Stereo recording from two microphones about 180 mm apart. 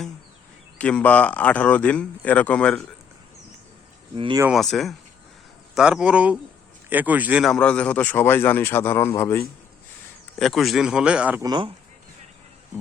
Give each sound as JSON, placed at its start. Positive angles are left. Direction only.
{"t": 0.8, "sound": "speech", "side_deg": 5}
{"t": 4.1, "sound": "speech", "side_deg": -30}
{"t": 4.5, "sound": "speech", "side_deg": 0}
{"t": 10.3, "sound": "speech", "side_deg": 0}
{"t": 11.4, "sound": "speech", "side_deg": -25}